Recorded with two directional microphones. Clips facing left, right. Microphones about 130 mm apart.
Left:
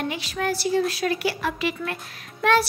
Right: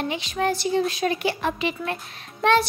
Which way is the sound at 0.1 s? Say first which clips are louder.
Right 2 dB; 20° right (ahead or behind).